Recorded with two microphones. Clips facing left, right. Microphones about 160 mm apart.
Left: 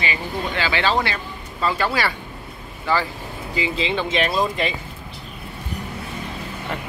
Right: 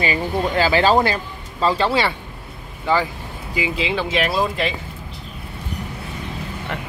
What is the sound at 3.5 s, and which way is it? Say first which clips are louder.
Speech: right 1 dB; 10° right (ahead or behind).